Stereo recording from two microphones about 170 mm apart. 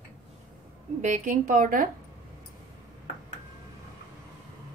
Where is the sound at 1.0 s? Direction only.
50° right (ahead or behind).